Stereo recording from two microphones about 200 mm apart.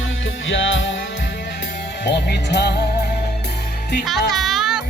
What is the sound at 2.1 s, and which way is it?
Music, 55° left (ahead or behind).